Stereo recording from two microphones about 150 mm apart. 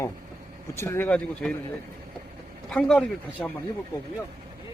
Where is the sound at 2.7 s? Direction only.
5° left (ahead or behind).